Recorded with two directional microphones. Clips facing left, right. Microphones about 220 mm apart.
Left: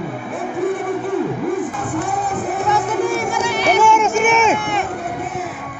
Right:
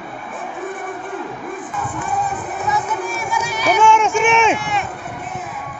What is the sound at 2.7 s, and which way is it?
Music, 70° left (ahead or behind).